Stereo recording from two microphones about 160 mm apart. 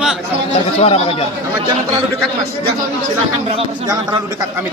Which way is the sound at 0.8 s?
40° left (ahead or behind).